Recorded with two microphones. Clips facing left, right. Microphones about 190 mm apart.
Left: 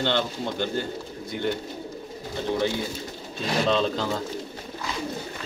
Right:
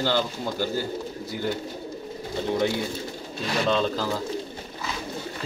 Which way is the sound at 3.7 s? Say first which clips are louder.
Even; centre (ahead or behind).